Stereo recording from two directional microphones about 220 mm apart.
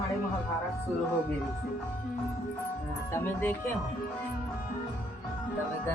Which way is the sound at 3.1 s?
10° left (ahead or behind).